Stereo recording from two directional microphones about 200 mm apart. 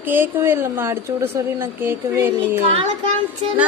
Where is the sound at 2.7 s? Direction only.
25° right (ahead or behind).